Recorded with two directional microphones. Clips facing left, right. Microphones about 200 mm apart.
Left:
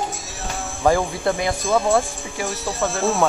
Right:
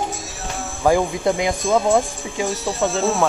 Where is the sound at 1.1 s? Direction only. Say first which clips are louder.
Right 2 dB; 15° right (ahead or behind).